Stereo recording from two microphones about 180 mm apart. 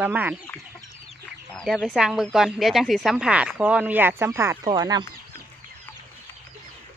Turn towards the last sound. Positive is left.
turn(degrees=-20)  # may be behind; listen again after turning